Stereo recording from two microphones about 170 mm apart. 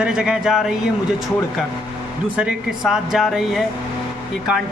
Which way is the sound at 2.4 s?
5° right (ahead or behind).